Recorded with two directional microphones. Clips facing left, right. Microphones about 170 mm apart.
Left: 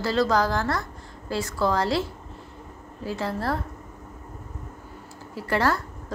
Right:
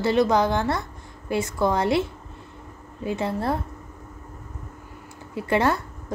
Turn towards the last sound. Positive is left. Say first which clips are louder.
# right 2 dB
turn(degrees=-20)  # may be behind; listen again after turning